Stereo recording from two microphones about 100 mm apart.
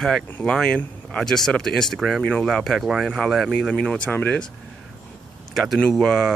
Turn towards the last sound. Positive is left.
turn(degrees=5)  # may be behind; listen again after turning